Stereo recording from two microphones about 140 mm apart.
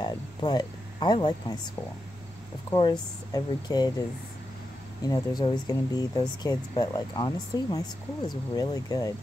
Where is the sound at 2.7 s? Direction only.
30° left (ahead or behind).